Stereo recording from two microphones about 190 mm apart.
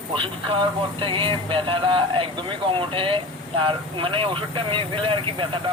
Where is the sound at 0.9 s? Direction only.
25° right (ahead or behind).